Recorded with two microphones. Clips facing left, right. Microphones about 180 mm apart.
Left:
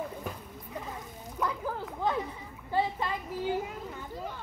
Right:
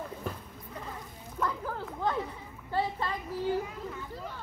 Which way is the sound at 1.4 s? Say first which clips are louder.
Even; 10° left (ahead or behind).